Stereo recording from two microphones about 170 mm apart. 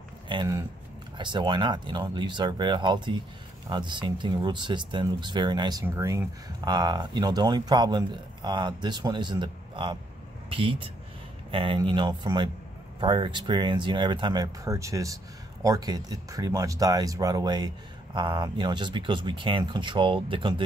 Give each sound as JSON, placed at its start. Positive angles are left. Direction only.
{"t": 0.3, "sound": "speech", "side_deg": -25}